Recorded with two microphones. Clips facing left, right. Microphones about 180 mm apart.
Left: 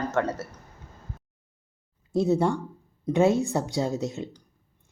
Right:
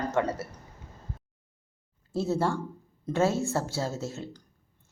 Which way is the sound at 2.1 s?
15° left (ahead or behind).